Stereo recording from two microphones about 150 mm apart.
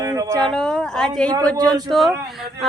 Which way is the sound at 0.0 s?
25° right (ahead or behind).